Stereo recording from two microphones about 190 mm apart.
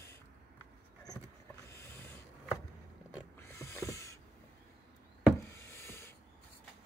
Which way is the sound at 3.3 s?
15° left (ahead or behind).